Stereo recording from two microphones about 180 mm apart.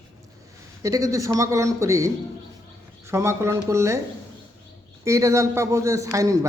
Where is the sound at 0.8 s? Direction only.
20° right (ahead or behind).